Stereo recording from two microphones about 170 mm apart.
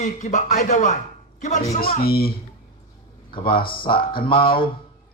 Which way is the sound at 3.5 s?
60° left (ahead or behind).